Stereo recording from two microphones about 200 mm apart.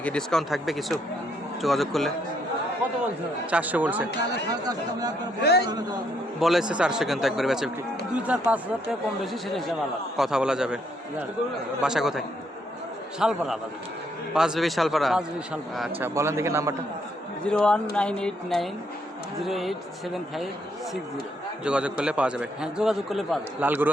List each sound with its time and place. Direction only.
0.0 s a man's voice: 5° left (ahead or behind)
3.5 s a man's voice: 5° right (ahead or behind)
4.4 s speech: 20° right (ahead or behind)
5.4 s a man's voice: 55° left (ahead or behind)
6.4 s a man's voice: centre (ahead or behind)
11.8 s a man's voice: 5° right (ahead or behind)
16.0 s a man's voice: 10° right (ahead or behind)
17.4 s a man's voice: 5° left (ahead or behind)
21.6 s a man's voice: 5° right (ahead or behind)